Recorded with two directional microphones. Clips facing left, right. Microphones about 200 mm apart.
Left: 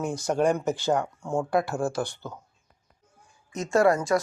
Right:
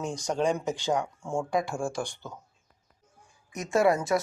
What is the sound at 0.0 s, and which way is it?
Speech, 5° left (ahead or behind).